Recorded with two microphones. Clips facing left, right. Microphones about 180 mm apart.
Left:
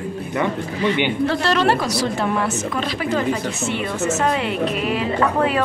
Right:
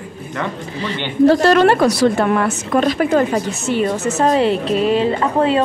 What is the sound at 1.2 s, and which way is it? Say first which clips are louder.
A woman's voice: right 10 dB; 50° right (ahead or behind).